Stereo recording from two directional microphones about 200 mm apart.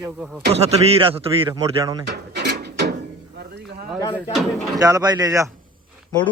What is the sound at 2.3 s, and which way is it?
Ratchet, 55° right (ahead or behind).